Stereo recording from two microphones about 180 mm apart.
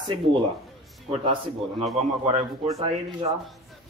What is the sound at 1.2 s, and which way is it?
A man's voice, 35° right (ahead or behind).